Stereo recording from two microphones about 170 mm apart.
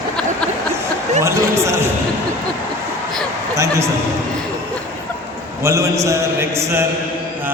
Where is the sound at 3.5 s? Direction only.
15° right (ahead or behind).